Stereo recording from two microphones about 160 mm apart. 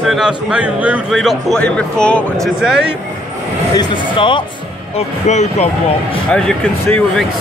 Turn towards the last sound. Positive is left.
turn(degrees=5)  # may be behind; listen again after turning